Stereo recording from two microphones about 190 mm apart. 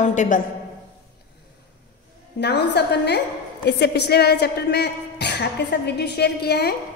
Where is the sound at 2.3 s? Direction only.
60° left (ahead or behind).